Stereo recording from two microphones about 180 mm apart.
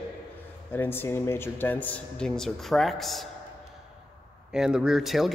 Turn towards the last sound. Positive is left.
turn(degrees=0)  # may be behind; listen again after turning